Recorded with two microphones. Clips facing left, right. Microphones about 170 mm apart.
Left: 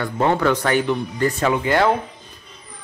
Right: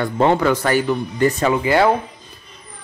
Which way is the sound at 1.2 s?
20° right (ahead or behind).